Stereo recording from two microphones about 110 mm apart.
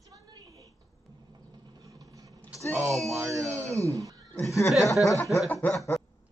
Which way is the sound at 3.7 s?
30° right (ahead or behind).